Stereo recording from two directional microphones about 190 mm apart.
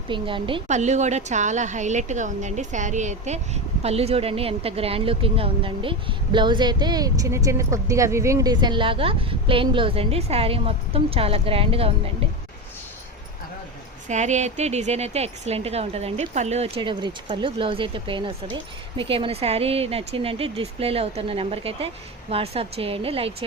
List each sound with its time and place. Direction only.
0.1 s speech: 25° right (ahead or behind)
0.7 s a woman's voice: 40° right (ahead or behind)
14.1 s a woman's voice: 40° right (ahead or behind)